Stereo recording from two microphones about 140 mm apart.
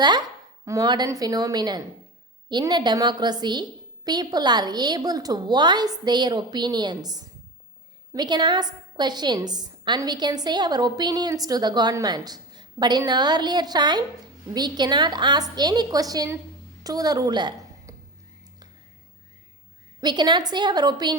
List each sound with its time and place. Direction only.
0.0 s a woman's voice: 30° right (ahead or behind)
20.0 s a woman's voice: 30° right (ahead or behind)